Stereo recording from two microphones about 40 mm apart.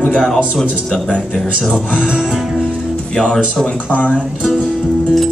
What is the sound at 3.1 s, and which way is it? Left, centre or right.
Speech, centre.